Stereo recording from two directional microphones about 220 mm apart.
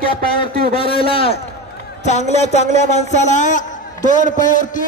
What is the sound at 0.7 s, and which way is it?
A man's voice, 25° left (ahead or behind).